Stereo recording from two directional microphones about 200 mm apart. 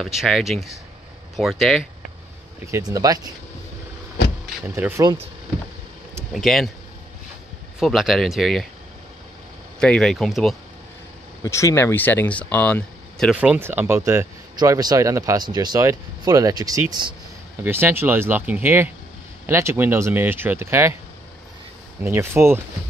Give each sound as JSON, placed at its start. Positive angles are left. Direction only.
{"t": 0.0, "sound": "speech", "side_deg": 0}
{"t": 2.6, "sound": "speech", "side_deg": -15}
{"t": 4.6, "sound": "speech", "side_deg": -10}
{"t": 6.3, "sound": "speech", "side_deg": 0}
{"t": 7.8, "sound": "speech", "side_deg": 0}
{"t": 9.8, "sound": "speech", "side_deg": 5}
{"t": 11.4, "sound": "speech", "side_deg": 15}
{"t": 13.3, "sound": "speech", "side_deg": -5}
{"t": 22.0, "sound": "speech", "side_deg": -10}